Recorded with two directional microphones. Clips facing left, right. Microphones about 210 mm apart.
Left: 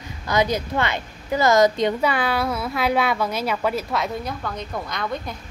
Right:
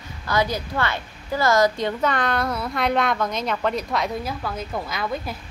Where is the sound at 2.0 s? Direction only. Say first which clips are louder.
Left 1 dB; 5° left (ahead or behind).